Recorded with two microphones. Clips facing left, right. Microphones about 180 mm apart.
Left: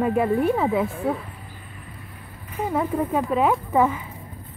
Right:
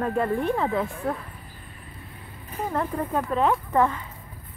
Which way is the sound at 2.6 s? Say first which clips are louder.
Left 4 dB; 5° left (ahead or behind).